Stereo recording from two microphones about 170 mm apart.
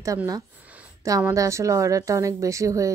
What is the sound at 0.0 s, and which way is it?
A woman's voice, 20° right (ahead or behind).